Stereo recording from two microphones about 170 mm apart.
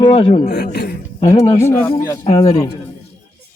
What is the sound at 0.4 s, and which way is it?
Speech, 75° left (ahead or behind).